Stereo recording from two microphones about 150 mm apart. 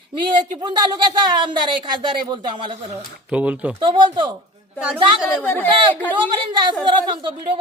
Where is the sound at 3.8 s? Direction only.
30° right (ahead or behind).